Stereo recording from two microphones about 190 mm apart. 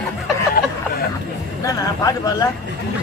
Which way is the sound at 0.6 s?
50° left (ahead or behind).